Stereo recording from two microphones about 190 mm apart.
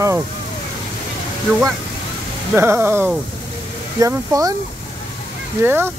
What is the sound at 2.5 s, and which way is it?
Speech, 10° right (ahead or behind).